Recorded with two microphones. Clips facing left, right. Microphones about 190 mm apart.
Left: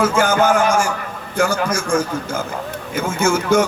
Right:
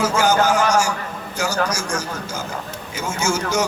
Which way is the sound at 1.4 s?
55° left (ahead or behind).